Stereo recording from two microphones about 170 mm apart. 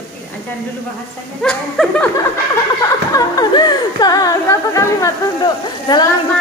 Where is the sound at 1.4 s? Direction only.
5° left (ahead or behind).